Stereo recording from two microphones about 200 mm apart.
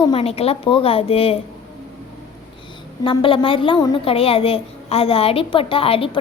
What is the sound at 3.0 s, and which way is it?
A woman's voice, 25° left (ahead or behind).